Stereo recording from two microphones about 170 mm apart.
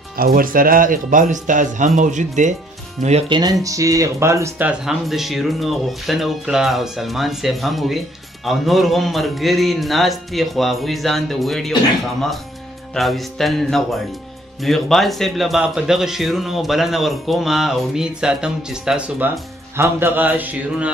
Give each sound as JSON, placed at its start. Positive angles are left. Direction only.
{"t": 0.2, "sound": "speech", "side_deg": -55}
{"t": 3.3, "sound": "speech", "side_deg": -25}
{"t": 12.9, "sound": "a man's voice", "side_deg": 0}